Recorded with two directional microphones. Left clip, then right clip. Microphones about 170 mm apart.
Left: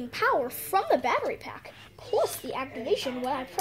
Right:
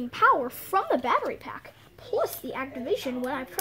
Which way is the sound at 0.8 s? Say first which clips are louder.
Even; 35° right (ahead or behind).